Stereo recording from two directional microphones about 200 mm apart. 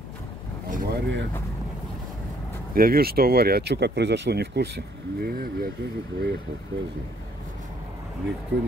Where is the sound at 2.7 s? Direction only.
50° right (ahead or behind).